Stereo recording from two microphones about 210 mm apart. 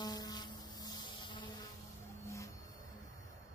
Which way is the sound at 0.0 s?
20° left (ahead or behind).